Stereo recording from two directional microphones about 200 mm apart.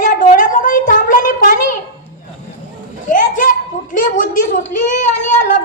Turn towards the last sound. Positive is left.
turn(degrees=40)  # may be behind; listen again after turning